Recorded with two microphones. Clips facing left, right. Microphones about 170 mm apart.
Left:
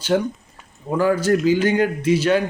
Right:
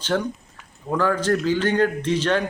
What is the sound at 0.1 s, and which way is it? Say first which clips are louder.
A man's voice: left 4 dB; 20° left (ahead or behind).